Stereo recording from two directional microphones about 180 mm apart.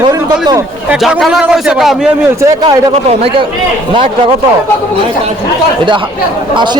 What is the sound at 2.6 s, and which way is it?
Speech, 30° right (ahead or behind).